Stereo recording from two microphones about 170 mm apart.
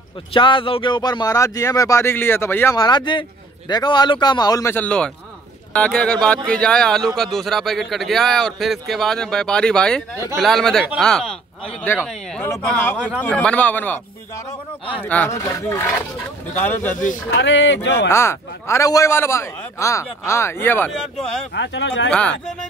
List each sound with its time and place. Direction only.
0.3 s a man's voice: 30° left (ahead or behind); by 14.0 s 10° left (ahead or behind)
15.0 s speech: 10° left (ahead or behind)
16.9 s speech: 50° left (ahead or behind)
17.3 s speech: 90° left
18.0 s speech: 15° left (ahead or behind)
21.5 s speech: 90° left
22.1 s speech: 5° left (ahead or behind)